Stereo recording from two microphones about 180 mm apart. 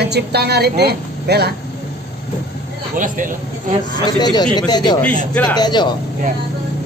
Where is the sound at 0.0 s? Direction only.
65° right (ahead or behind).